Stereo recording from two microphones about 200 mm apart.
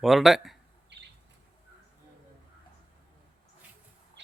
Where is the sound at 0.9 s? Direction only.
60° right (ahead or behind).